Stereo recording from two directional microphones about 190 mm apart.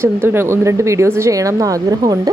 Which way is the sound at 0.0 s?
10° right (ahead or behind).